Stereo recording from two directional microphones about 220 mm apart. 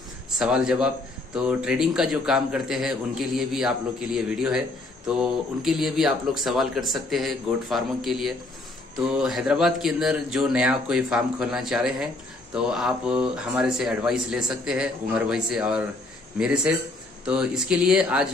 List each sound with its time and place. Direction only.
0.4 s a man's voice: 5° right (ahead or behind)